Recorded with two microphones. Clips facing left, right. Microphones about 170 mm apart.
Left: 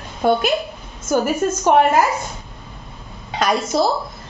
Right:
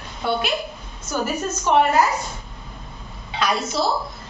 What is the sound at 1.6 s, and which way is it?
Speech, 50° left (ahead or behind).